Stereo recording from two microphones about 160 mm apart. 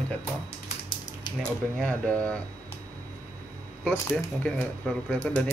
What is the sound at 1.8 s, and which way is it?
Speech, 5° left (ahead or behind).